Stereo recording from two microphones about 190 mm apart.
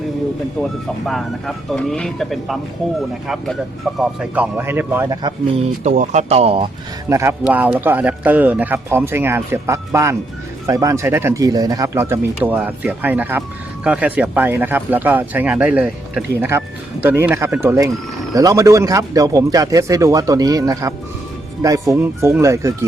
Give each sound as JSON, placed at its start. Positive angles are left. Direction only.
{"t": 0.6, "sound": "speech", "side_deg": 0}
{"t": 5.8, "sound": "speech", "side_deg": -40}
{"t": 7.1, "sound": "speech", "side_deg": -15}